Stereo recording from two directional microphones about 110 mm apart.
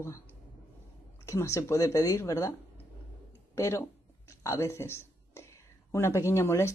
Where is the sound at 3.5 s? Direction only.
25° left (ahead or behind).